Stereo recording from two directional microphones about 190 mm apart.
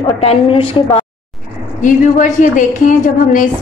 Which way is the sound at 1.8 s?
40° left (ahead or behind).